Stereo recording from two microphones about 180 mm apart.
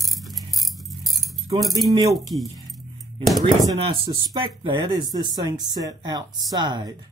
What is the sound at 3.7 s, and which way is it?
Speech, 30° right (ahead or behind).